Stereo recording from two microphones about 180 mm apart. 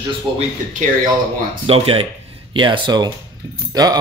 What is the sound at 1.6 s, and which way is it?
Speech, 30° right (ahead or behind).